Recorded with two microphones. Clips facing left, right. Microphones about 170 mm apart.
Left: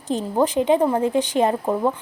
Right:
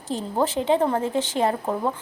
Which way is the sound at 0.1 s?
15° left (ahead or behind).